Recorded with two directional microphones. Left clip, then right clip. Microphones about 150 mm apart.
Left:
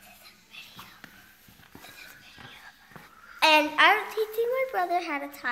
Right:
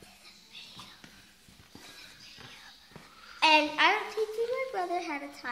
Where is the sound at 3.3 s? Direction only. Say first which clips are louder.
Left 3 dB; 60° left (ahead or behind).